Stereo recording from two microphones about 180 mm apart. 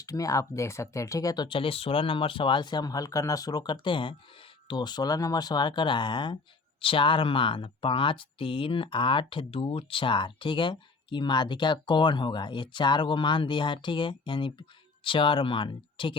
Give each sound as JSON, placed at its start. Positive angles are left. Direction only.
{"t": 0.0, "sound": "speech", "side_deg": 20}